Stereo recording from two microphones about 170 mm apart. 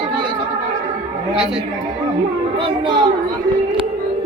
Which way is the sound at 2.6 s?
25° right (ahead or behind).